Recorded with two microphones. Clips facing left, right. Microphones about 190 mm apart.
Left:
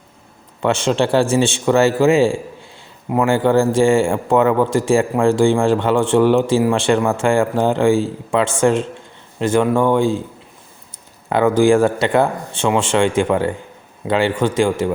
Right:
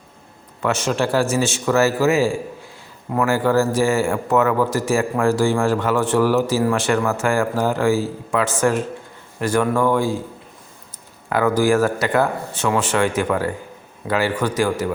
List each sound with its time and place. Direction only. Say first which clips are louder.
0.6 s speech: left 4 dB; 25° left (ahead or behind)
11.3 s speech: left 4 dB; 25° left (ahead or behind)